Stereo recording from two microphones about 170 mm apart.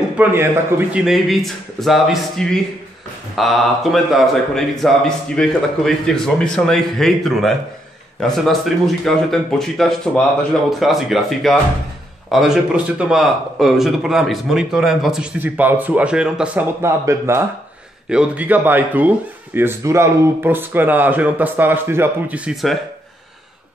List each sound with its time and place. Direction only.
0.2 s a man's voice: 10° right (ahead or behind)
1.0 s a man's voice: centre (ahead or behind)
16.8 s a man's voice: 15° right (ahead or behind)